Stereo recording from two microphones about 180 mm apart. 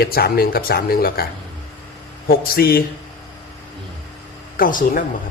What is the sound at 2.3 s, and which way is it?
Speech, 55° left (ahead or behind).